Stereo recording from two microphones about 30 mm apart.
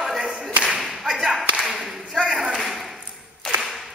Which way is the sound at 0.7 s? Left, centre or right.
Centre.